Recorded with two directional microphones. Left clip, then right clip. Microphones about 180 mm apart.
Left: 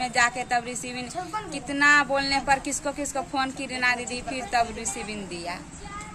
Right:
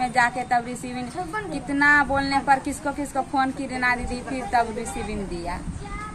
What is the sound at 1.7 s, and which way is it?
Speech, 20° left (ahead or behind).